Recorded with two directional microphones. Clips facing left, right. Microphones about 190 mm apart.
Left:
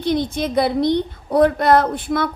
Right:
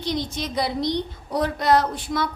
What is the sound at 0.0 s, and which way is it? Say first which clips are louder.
A woman's voice: left 7 dB; 55° left (ahead or behind).